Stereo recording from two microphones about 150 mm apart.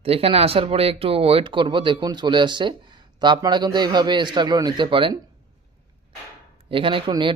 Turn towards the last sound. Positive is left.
turn(degrees=-35)  # may be behind; listen again after turning